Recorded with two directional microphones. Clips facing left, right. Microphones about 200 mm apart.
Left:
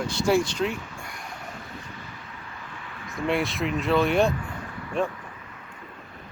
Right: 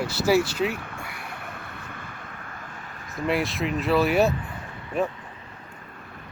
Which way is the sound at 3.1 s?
Centre (ahead or behind).